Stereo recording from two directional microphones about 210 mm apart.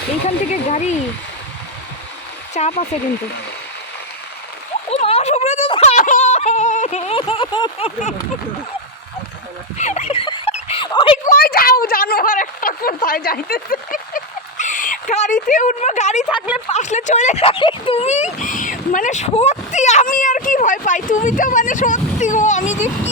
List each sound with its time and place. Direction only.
0.3 s speech: 35° left (ahead or behind)
2.5 s speech: 35° left (ahead or behind)
4.9 s yodeling: 30° left (ahead or behind)
9.7 s a sound: 35° left (ahead or behind)
11.3 s speech: 45° left (ahead or behind)